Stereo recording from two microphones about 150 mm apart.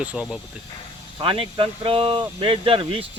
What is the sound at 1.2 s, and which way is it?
Speech, 35° right (ahead or behind).